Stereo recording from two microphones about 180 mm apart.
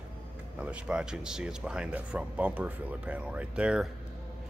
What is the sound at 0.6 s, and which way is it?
Speech, 5° right (ahead or behind).